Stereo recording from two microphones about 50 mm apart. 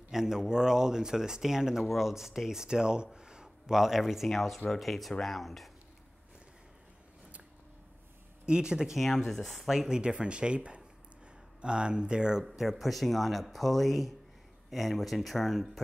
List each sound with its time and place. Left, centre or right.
0.1 s speech: centre
8.5 s speech: centre
12.4 s speech: centre